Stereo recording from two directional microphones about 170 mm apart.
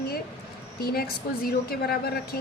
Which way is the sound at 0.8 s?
65° left (ahead or behind).